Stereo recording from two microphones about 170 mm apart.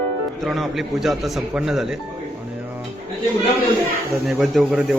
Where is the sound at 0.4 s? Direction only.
Centre (ahead or behind).